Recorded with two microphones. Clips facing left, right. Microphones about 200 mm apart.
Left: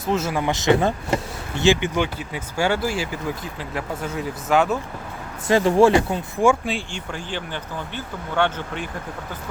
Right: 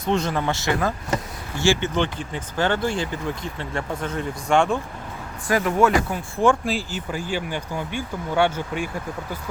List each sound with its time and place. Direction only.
0.0 s speech: 5° left (ahead or behind)
5.5 s speech: 30° left (ahead or behind)
6.4 s speech: 5° left (ahead or behind)